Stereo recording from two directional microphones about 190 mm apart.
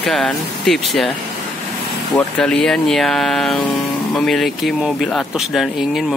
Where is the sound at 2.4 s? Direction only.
5° left (ahead or behind).